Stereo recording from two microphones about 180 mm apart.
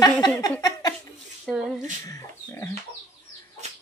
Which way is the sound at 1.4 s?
5° right (ahead or behind).